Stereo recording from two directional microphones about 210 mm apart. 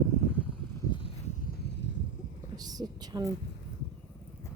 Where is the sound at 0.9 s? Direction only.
25° left (ahead or behind).